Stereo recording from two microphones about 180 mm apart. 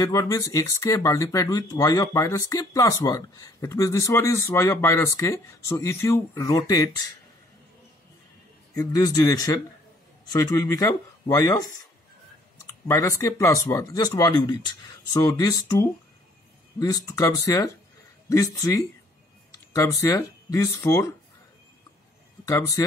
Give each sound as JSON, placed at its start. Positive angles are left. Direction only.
{"t": 0.0, "sound": "speech", "side_deg": 20}
{"t": 8.7, "sound": "speech", "side_deg": 20}
{"t": 22.4, "sound": "speech", "side_deg": 20}